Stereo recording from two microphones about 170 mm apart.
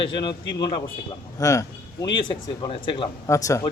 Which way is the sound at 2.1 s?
30° left (ahead or behind).